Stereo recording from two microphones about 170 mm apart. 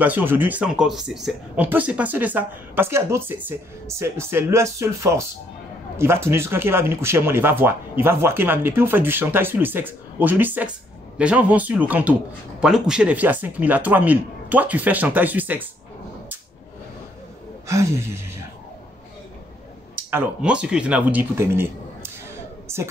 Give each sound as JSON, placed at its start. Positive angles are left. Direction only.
{"t": 0.0, "sound": "speech", "side_deg": -10}
{"t": 17.6, "sound": "speech", "side_deg": -15}
{"t": 20.1, "sound": "speech", "side_deg": -10}